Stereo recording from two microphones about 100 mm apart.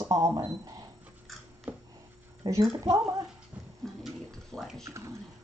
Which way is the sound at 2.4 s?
35° right (ahead or behind).